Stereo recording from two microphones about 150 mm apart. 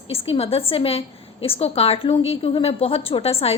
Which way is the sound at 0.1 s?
40° left (ahead or behind).